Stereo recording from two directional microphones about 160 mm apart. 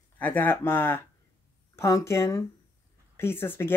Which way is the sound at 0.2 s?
10° left (ahead or behind).